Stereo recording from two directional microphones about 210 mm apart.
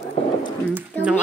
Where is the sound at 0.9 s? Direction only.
10° left (ahead or behind).